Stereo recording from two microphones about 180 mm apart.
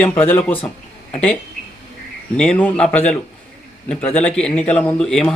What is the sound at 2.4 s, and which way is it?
Speech, 5° left (ahead or behind).